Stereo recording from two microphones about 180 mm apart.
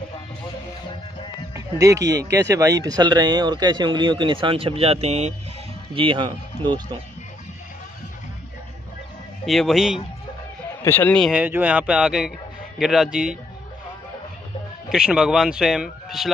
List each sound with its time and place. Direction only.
1.5 s music: 15° right (ahead or behind)
2.3 s speech: 15° right (ahead or behind)
9.5 s speech: centre (ahead or behind)
10.8 s speech: 10° left (ahead or behind)
14.9 s speech: 5° right (ahead or behind)